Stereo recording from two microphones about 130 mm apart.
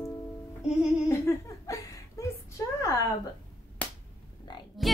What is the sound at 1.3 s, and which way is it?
Laughter, 20° left (ahead or behind).